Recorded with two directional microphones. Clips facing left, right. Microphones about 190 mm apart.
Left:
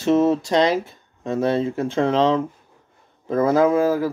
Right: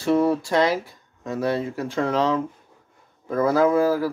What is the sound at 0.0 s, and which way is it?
Speech, 20° left (ahead or behind).